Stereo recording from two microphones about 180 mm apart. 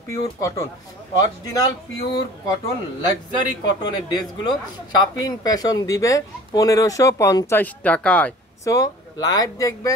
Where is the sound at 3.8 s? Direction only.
25° left (ahead or behind); by 8.7 s 10° left (ahead or behind).